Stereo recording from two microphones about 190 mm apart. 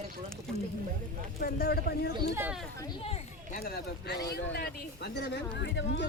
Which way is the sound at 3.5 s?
50° left (ahead or behind).